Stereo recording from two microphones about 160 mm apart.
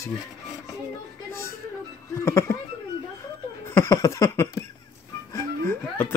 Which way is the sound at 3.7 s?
20° left (ahead or behind).